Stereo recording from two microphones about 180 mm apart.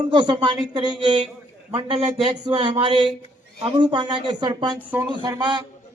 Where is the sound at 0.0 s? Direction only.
25° right (ahead or behind).